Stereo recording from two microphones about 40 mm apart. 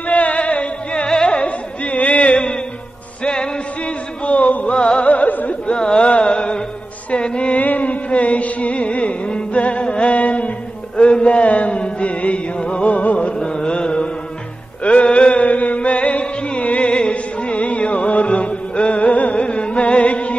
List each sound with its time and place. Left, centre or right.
0.1 s music: left
1.0 s music: left
3.3 s a sound: left
4.7 s music: left
5.0 s music: left
5.7 s music: left
7.6 s music: left
13.4 s carnatic music: left
14.8 s music: left